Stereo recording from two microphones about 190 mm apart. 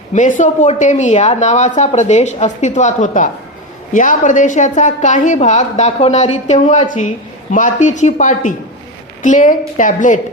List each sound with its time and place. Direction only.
0.1 s a woman's voice: 40° left (ahead or behind)